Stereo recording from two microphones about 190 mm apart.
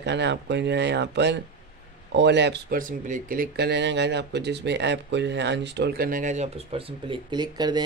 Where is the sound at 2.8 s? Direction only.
45° right (ahead or behind).